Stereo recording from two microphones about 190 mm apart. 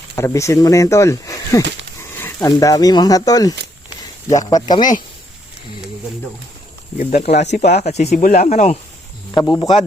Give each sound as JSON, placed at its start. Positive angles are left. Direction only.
{"t": 0.2, "sound": "speech", "side_deg": 15}
{"t": 7.0, "sound": "speech", "side_deg": 35}
{"t": 9.3, "sound": "speech", "side_deg": 15}